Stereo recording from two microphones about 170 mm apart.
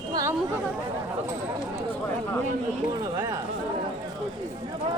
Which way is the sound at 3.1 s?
25° right (ahead or behind).